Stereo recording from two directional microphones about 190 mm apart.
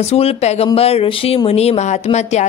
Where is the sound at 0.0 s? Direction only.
30° left (ahead or behind).